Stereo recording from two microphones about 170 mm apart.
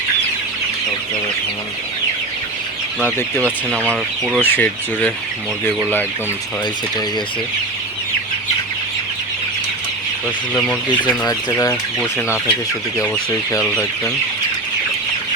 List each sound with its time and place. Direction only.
3.0 s speech: 10° left (ahead or behind)
3.7 s speech: 5° right (ahead or behind)
4.4 s speech: 10° left (ahead or behind)
10.5 s speech: 10° left (ahead or behind)
11.3 s speech: 20° left (ahead or behind)
11.7 s speech: 5° left (ahead or behind)